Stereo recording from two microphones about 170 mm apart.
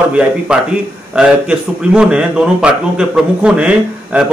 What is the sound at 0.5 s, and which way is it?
A man's voice, 5° right (ahead or behind).